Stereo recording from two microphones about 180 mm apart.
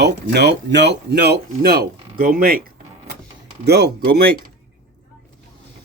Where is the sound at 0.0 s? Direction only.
70° right (ahead or behind).